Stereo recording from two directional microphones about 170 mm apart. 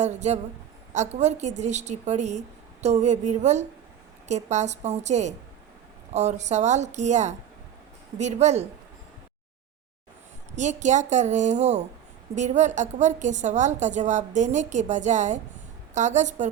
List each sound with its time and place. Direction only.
0.0 s a woman's voice: 40° right (ahead or behind)
10.5 s a woman's voice: 45° right (ahead or behind)